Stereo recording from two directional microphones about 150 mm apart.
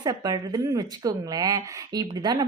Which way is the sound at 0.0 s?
30° right (ahead or behind).